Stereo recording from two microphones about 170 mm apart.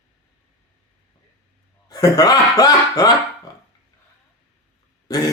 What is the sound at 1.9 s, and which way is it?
Speech, 20° left (ahead or behind).